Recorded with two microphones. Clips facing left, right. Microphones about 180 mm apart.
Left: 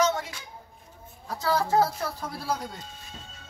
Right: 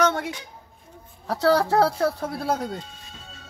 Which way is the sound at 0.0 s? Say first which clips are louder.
Right 3 dB; 60° right (ahead or behind).